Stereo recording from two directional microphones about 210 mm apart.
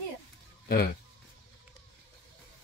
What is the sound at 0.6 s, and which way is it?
Speech, 50° left (ahead or behind).